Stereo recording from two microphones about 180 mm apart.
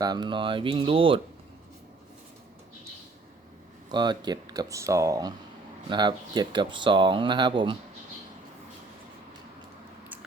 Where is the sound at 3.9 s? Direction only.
25° right (ahead or behind).